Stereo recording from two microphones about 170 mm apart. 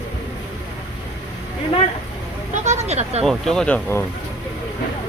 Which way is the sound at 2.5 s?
45° right (ahead or behind).